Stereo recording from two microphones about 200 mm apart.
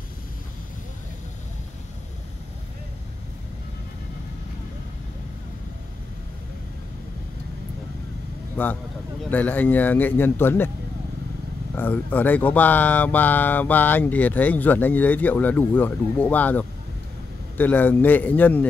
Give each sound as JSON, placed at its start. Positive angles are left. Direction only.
{"t": 8.6, "sound": "speech", "side_deg": 10}
{"t": 11.7, "sound": "speech", "side_deg": 10}